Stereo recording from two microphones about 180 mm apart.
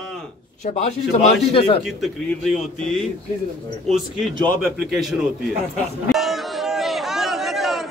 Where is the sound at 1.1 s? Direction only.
40° left (ahead or behind).